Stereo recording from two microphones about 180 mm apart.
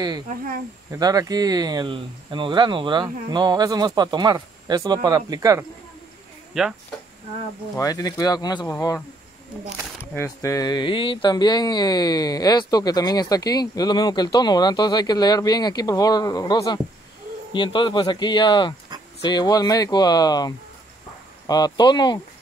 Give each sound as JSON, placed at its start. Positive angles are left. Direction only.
{"t": 0.9, "sound": "speech", "side_deg": -20}
{"t": 6.5, "sound": "speech", "side_deg": 0}
{"t": 7.7, "sound": "speech", "side_deg": 20}
{"t": 10.1, "sound": "speech", "side_deg": 15}